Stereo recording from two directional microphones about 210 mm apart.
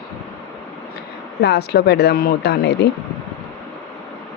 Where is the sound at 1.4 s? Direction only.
50° left (ahead or behind).